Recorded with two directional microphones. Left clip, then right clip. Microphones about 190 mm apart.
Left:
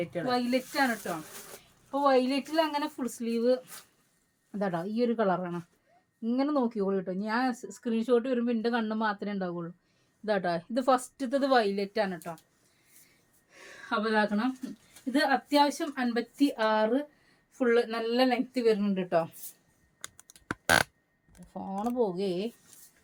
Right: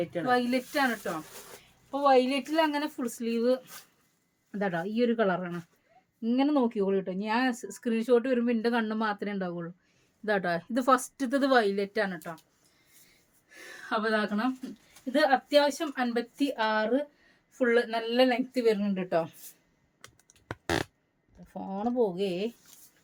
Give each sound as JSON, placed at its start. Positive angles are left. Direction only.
{"t": 0.0, "sound": "a woman's voice", "side_deg": -15}
{"t": 1.9, "sound": "a woman's voice", "side_deg": -15}
{"t": 13.5, "sound": "a sound", "side_deg": -20}
{"t": 15.1, "sound": "a woman's voice", "side_deg": -15}
{"t": 21.5, "sound": "speech", "side_deg": -20}